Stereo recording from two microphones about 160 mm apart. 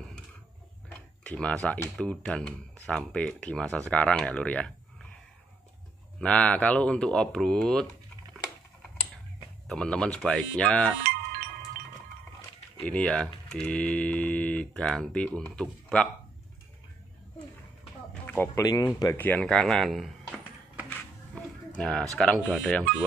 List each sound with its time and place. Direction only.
0.9 s speech: 10° left (ahead or behind)
6.1 s speech: 5° left (ahead or behind)
9.7 s speech: 5° left (ahead or behind)
11.1 s wind chime: 65° right (ahead or behind)
12.8 s speech: 5° left (ahead or behind)
18.1 s speech: 10° left (ahead or behind)
19.1 s speech: 10° left (ahead or behind)
21.4 s a sound: 5° left (ahead or behind)
22.1 s speech: 5° left (ahead or behind)